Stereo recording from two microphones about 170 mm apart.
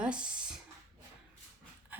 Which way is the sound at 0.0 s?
5° right (ahead or behind).